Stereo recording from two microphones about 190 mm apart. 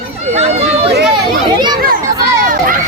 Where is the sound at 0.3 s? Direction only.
35° right (ahead or behind).